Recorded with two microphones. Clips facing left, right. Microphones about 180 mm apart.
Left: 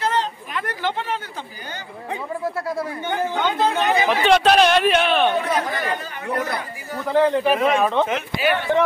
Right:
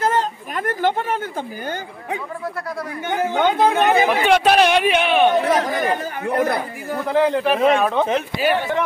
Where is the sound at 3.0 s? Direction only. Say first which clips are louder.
Right 2 dB; 15° right (ahead or behind).